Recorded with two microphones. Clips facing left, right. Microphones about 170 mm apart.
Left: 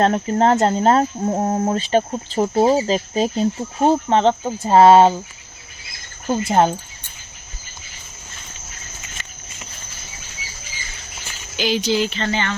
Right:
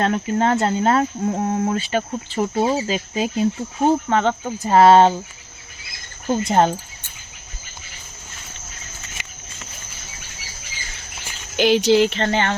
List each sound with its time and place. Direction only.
0.0 s cricket: 35° left (ahead or behind)
4.6 s speech: 25° left (ahead or behind)
6.3 s speech: 5° left (ahead or behind)
9.2 s a sound: 15° right (ahead or behind)
11.5 s speech: 60° right (ahead or behind)